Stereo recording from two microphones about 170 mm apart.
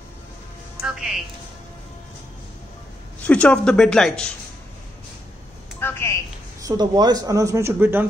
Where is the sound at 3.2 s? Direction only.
5° left (ahead or behind).